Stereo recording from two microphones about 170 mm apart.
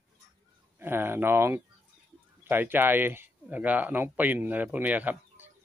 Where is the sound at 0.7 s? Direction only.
15° right (ahead or behind).